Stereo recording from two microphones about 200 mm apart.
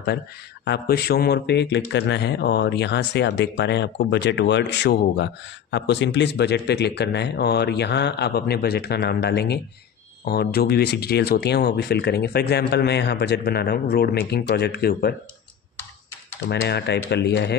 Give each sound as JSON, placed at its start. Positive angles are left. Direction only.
{"t": 0.7, "sound": "speech", "side_deg": 50}
{"t": 16.4, "sound": "speech", "side_deg": 55}